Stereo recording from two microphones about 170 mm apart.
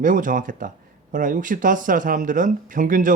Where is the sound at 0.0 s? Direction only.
50° right (ahead or behind).